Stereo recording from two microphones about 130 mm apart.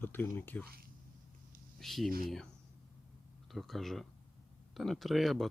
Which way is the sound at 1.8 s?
Centre (ahead or behind).